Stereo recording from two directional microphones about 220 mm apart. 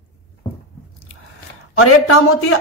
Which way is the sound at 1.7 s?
70° left (ahead or behind).